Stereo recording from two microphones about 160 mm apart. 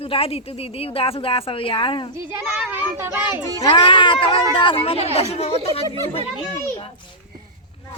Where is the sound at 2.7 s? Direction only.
15° right (ahead or behind).